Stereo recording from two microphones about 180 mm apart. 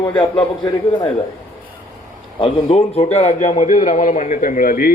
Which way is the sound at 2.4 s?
30° left (ahead or behind).